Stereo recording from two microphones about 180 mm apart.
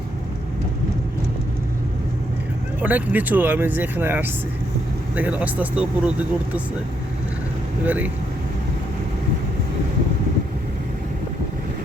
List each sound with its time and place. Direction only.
2.8 s speech: 10° right (ahead or behind)
7.9 s speech: 10° right (ahead or behind)